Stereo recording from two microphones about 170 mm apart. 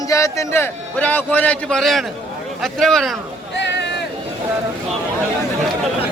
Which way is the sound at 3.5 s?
90° left.